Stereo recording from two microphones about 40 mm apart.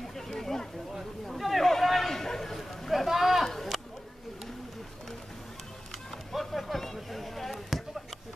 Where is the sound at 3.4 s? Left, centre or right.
Centre.